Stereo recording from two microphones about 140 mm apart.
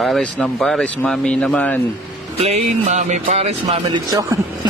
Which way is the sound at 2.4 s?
55° right (ahead or behind).